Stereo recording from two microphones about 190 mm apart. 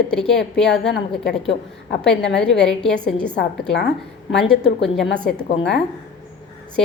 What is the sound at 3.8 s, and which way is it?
Speech, 65° left (ahead or behind).